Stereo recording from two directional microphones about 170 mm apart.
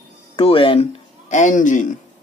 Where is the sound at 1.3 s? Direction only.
50° left (ahead or behind).